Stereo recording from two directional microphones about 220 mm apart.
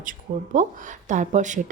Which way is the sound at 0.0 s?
35° right (ahead or behind).